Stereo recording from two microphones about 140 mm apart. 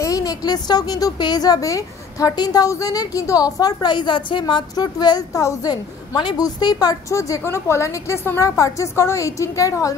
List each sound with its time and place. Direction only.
0.0 s speech: 25° left (ahead or behind)